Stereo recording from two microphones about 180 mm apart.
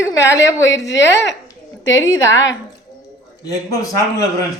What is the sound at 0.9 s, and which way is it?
Speech, 80° left.